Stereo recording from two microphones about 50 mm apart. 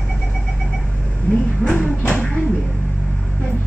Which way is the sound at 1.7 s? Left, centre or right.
Left.